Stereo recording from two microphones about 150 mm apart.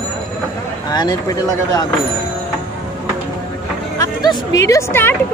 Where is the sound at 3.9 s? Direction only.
25° left (ahead or behind).